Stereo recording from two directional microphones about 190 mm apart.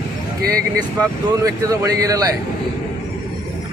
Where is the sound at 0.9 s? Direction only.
20° right (ahead or behind).